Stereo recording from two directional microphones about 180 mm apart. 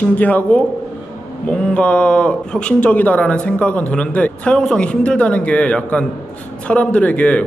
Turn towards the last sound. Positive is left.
turn(degrees=10)  # may be behind; listen again after turning